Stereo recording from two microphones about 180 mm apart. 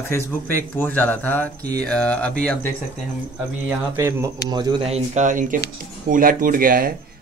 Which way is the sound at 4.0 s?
15° right (ahead or behind).